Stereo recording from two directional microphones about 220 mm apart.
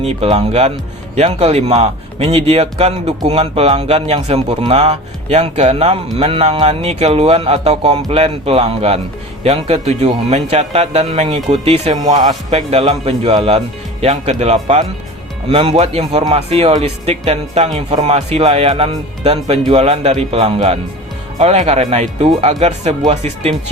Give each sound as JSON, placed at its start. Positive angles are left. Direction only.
{"t": 0.0, "sound": "a man's voice", "side_deg": -30}